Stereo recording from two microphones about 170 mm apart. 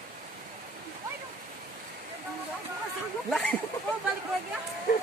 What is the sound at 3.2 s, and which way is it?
Speech, 5° left (ahead or behind).